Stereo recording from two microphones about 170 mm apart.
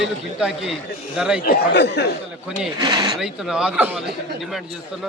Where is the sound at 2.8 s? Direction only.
25° right (ahead or behind).